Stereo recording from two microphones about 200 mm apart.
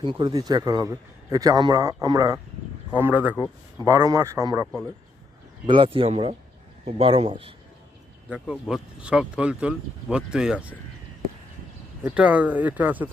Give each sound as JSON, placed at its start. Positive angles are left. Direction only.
{"t": 0.0, "sound": "speech", "side_deg": -25}
{"t": 3.3, "sound": "speech", "side_deg": 15}
{"t": 3.8, "sound": "speech", "side_deg": -15}
{"t": 8.3, "sound": "speech", "side_deg": -5}
{"t": 12.0, "sound": "speech", "side_deg": -5}